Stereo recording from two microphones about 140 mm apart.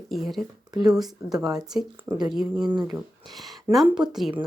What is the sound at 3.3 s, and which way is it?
Speech, centre (ahead or behind).